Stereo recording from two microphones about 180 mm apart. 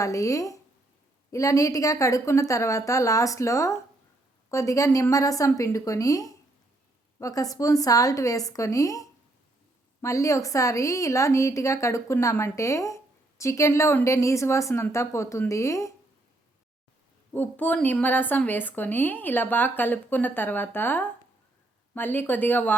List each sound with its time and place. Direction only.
0.0 s a woman's voice: 20° left (ahead or behind)
17.3 s a woman's voice: 10° left (ahead or behind)